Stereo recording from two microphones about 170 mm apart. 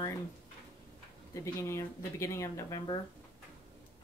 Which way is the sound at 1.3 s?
15° left (ahead or behind).